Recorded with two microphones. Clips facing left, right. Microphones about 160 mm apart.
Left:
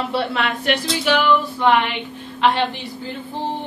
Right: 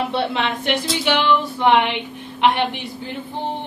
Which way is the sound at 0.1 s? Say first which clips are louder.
Even; 20° right (ahead or behind).